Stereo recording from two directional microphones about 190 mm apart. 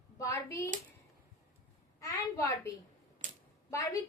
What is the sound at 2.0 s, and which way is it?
Speech, 15° left (ahead or behind).